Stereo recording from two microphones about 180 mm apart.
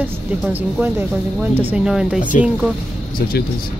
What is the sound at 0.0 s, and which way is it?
Speech, 10° right (ahead or behind).